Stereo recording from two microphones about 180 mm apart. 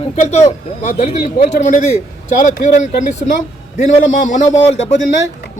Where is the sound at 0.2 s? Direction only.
40° left (ahead or behind).